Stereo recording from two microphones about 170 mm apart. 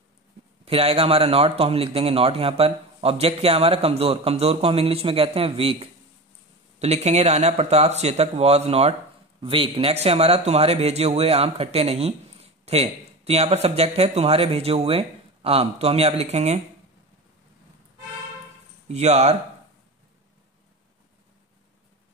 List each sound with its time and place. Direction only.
0.7 s speech: 35° right (ahead or behind)
18.9 s speech: 40° right (ahead or behind)